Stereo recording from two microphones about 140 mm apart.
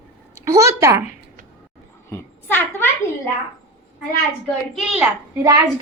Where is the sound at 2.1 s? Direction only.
15° left (ahead or behind).